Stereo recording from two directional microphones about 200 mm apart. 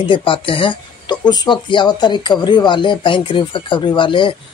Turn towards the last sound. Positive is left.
turn(degrees=25)  # may be behind; listen again after turning